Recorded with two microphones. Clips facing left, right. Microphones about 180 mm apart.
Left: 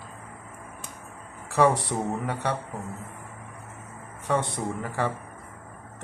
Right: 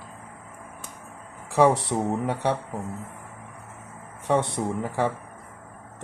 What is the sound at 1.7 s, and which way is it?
Speech, 25° right (ahead or behind).